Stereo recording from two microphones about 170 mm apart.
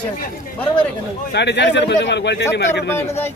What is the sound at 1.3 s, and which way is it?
A man's voice, 90° left.